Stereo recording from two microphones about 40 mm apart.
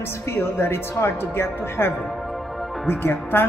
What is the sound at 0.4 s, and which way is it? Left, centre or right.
A woman's voice, left.